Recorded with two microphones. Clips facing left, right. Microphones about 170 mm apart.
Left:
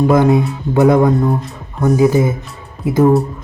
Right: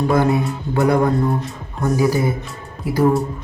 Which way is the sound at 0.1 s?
20° left (ahead or behind).